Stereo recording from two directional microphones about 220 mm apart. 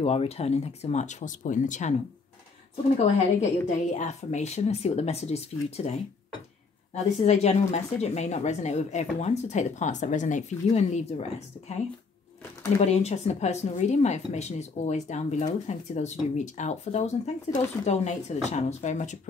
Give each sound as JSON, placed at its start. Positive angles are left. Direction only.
{"t": 0.0, "sound": "speech", "side_deg": 30}
{"t": 3.3, "sound": "a woman's voice", "side_deg": 30}
{"t": 7.0, "sound": "speech", "side_deg": 30}
{"t": 12.8, "sound": "speech", "side_deg": 30}